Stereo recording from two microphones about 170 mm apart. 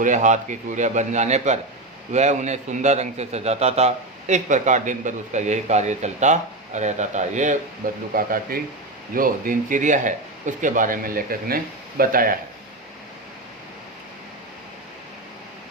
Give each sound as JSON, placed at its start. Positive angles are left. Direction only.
{"t": 0.0, "sound": "a man's voice", "side_deg": -45}
{"t": 8.1, "sound": "a man's voice", "side_deg": -60}